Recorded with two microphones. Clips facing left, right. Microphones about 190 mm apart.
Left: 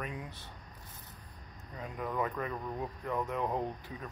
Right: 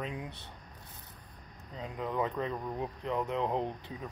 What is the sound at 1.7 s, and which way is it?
Speech, 20° right (ahead or behind).